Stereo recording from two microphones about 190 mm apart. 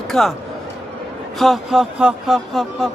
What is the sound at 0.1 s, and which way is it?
Speech, 5° left (ahead or behind).